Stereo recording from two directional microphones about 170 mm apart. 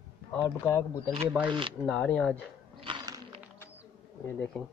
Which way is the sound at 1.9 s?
5° left (ahead or behind).